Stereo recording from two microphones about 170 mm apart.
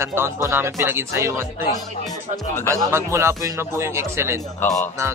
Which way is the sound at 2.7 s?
15° right (ahead or behind).